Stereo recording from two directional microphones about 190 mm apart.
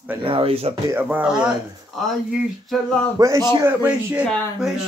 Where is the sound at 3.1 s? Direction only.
15° right (ahead or behind).